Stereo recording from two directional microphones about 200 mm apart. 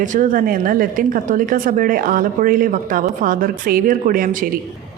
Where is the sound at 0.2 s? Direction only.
45° right (ahead or behind).